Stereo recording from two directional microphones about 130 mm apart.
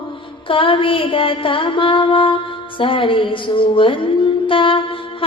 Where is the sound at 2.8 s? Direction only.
40° left (ahead or behind).